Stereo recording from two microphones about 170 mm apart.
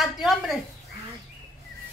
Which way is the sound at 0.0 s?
Centre (ahead or behind).